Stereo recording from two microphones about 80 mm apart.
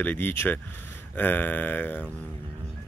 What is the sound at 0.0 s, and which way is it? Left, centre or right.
Speech, left.